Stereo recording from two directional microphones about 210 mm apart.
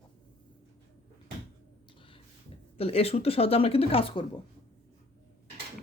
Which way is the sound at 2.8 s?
30° left (ahead or behind).